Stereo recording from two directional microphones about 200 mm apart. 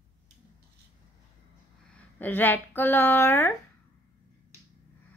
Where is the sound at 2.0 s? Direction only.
10° left (ahead or behind).